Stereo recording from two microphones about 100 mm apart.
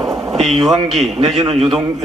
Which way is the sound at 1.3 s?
70° right (ahead or behind).